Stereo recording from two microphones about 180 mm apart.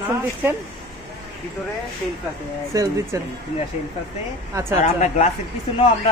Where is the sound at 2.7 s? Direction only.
15° right (ahead or behind).